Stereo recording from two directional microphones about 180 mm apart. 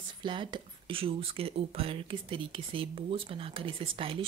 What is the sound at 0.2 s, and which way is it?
Speech, 25° right (ahead or behind).